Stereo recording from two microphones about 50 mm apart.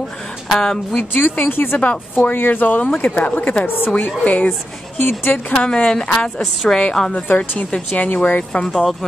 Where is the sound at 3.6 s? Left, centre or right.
Left.